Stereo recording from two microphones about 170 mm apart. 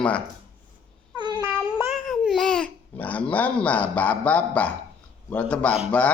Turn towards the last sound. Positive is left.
turn(degrees=5)  # may be behind; listen again after turning